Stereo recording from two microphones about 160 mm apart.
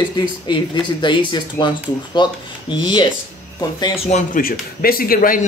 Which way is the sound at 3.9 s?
40° left (ahead or behind).